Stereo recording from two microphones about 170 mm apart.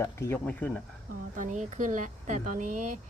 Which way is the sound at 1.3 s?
50° right (ahead or behind).